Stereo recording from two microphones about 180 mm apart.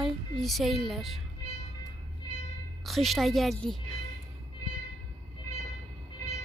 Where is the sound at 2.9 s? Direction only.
Centre (ahead or behind).